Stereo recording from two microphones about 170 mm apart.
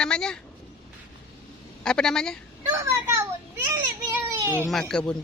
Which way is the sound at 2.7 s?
15° right (ahead or behind).